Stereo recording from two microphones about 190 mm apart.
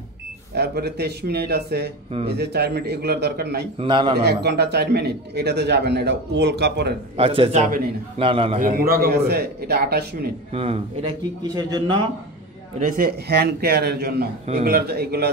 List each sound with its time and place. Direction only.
0.6 s a man's voice: 60° right (ahead or behind)
3.8 s speech: 25° right (ahead or behind)
4.2 s a man's voice: 60° right (ahead or behind)
7.2 s speech: 30° right (ahead or behind)
8.5 s a man's voice: 50° right (ahead or behind)
10.5 s speech: 30° right (ahead or behind)
12.7 s a man's voice: 45° right (ahead or behind)